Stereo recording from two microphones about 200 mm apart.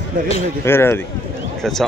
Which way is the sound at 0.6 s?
10° left (ahead or behind).